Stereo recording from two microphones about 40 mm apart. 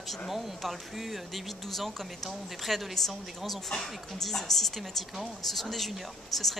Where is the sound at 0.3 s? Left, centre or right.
Centre.